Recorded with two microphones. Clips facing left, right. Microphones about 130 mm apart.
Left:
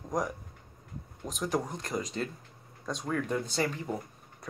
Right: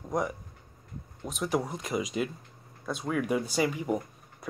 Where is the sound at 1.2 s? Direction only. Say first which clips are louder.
Right 2 dB; 5° right (ahead or behind).